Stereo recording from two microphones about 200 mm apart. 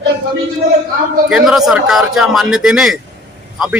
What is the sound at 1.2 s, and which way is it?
A man's voice, centre (ahead or behind).